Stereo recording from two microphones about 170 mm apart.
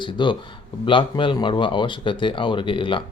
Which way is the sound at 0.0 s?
30° left (ahead or behind).